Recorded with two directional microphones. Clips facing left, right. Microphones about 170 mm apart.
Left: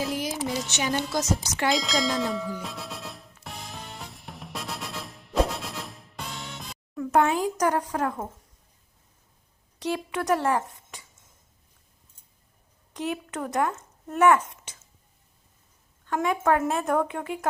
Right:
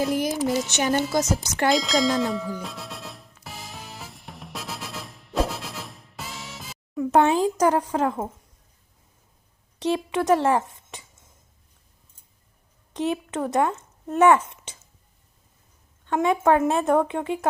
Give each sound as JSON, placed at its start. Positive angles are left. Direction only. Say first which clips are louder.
{"t": 0.4, "sound": "a sound", "louder": "right 6 dB", "side_deg": 0}
{"t": 0.8, "sound": "a woman's voice", "louder": "right 4 dB", "side_deg": -50}
{"t": 1.7, "sound": "music", "louder": "right 5 dB", "side_deg": 0}
{"t": 6.9, "sound": "a sound", "louder": "right 3 dB", "side_deg": -20}
{"t": 7.6, "sound": "speech", "louder": "right 4 dB", "side_deg": -25}
{"t": 9.7, "sound": "a woman's voice", "louder": "right 5 dB", "side_deg": -25}
{"t": 12.9, "sound": "speech", "louder": "right 5 dB", "side_deg": -25}
{"t": 16.0, "sound": "speech", "louder": "right 4 dB", "side_deg": -25}